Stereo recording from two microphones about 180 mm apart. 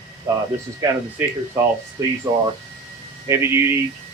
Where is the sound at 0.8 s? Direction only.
20° right (ahead or behind).